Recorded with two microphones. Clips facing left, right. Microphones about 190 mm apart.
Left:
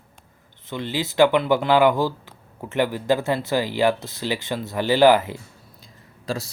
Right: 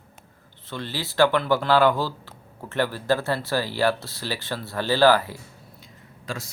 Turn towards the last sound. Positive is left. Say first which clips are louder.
# left 5 dB
turn(degrees=35)  # may be behind; listen again after turning